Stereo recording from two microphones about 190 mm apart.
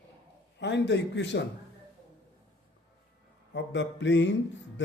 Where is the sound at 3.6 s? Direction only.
70° left (ahead or behind).